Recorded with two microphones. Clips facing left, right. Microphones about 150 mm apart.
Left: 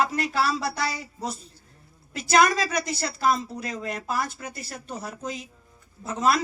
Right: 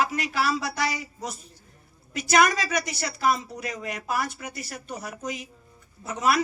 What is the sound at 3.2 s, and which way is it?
Speech, 30° left (ahead or behind).